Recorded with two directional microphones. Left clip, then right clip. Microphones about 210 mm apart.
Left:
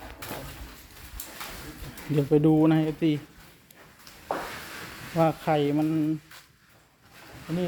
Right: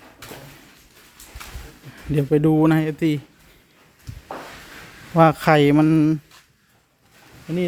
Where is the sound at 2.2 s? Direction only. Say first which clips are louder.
Right 4 dB; 25° right (ahead or behind).